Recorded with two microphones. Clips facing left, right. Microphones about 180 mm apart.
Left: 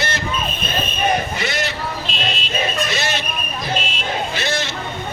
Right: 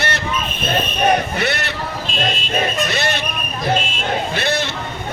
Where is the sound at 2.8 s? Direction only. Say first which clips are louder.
Right 2 dB; 60° right (ahead or behind).